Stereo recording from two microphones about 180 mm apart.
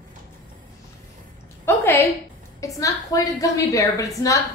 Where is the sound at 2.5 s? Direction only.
20° left (ahead or behind).